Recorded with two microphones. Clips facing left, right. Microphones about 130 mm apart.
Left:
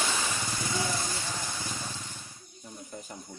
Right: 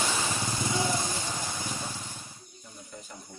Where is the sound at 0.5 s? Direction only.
20° right (ahead or behind).